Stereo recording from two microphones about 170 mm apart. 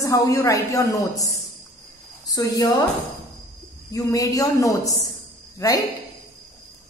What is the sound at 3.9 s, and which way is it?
A man's voice, 20° left (ahead or behind).